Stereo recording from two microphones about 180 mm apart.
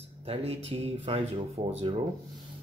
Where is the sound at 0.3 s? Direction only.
35° right (ahead or behind).